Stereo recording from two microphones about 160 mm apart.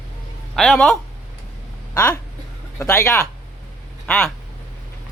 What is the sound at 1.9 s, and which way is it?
Speech, 15° left (ahead or behind).